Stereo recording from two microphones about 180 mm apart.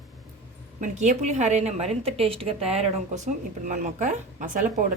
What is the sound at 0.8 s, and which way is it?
A woman's voice, 40° right (ahead or behind).